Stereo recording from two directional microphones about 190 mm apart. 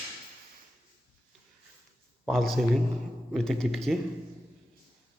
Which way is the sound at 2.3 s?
Centre (ahead or behind).